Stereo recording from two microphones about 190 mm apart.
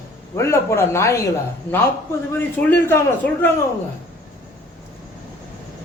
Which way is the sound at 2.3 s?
10° left (ahead or behind).